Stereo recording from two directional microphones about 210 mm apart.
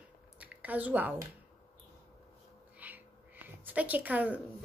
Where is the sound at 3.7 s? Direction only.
10° right (ahead or behind).